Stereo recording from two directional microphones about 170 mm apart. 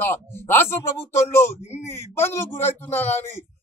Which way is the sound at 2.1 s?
15° left (ahead or behind).